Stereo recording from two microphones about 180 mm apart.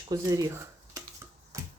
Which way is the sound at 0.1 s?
20° right (ahead or behind).